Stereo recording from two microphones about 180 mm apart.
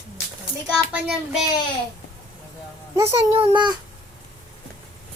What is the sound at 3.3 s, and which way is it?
Speech, 30° right (ahead or behind).